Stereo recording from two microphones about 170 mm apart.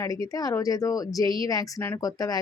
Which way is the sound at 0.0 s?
20° left (ahead or behind).